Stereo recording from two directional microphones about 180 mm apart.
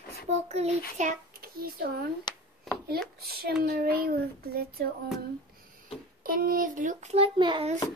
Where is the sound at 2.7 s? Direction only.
Centre (ahead or behind).